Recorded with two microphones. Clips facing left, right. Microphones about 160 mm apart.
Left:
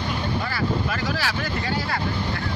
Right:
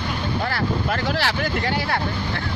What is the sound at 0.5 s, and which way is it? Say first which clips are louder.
Boat: right 2 dB; 65° right (ahead or behind).